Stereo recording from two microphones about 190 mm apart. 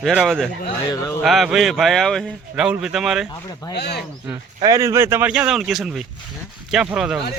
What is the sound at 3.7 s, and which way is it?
Speech, 60° left (ahead or behind).